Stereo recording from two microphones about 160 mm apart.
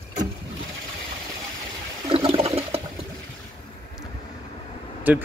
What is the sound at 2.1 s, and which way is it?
Toilet flush, 35° right (ahead or behind).